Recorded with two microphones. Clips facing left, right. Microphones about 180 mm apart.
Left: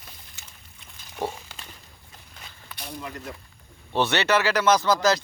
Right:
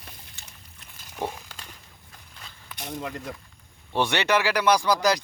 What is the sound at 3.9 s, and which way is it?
Speech, 15° right (ahead or behind).